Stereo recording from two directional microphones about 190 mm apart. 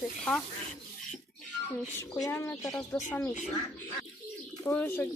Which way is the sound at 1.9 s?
15° left (ahead or behind).